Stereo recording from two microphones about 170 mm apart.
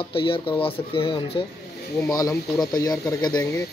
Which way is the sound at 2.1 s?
20° left (ahead or behind).